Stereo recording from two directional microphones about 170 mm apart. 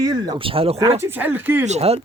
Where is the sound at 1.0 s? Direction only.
10° right (ahead or behind).